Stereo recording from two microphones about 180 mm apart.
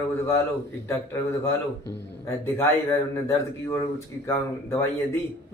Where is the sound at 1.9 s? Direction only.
15° left (ahead or behind).